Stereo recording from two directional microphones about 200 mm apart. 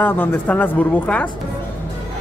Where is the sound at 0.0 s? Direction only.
10° left (ahead or behind).